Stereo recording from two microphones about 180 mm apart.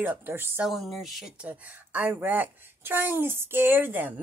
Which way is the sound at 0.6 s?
Centre (ahead or behind).